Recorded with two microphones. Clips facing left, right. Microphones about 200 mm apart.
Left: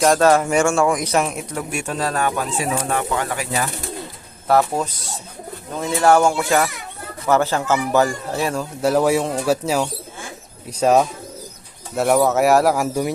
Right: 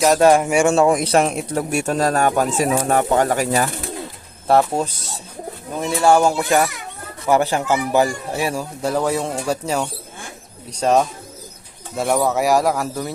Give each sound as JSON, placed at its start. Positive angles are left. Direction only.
{"t": 0.2, "sound": "speech", "side_deg": -15}
{"t": 4.4, "sound": "speech", "side_deg": -25}
{"t": 6.0, "sound": "speech", "side_deg": -10}
{"t": 6.2, "sound": "speech", "side_deg": -20}
{"t": 8.8, "sound": "speech", "side_deg": 5}